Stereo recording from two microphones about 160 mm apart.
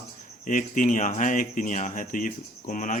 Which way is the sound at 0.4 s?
55° left (ahead or behind).